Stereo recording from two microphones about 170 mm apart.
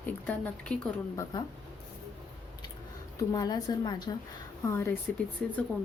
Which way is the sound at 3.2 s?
20° left (ahead or behind).